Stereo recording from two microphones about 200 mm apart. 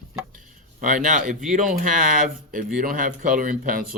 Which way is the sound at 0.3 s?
40° right (ahead or behind).